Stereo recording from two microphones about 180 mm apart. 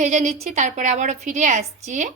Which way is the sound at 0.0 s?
40° right (ahead or behind).